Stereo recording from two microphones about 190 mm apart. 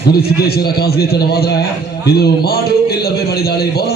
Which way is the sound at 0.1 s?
55° left (ahead or behind).